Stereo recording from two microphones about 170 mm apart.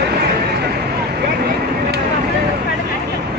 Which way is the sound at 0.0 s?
75° right (ahead or behind).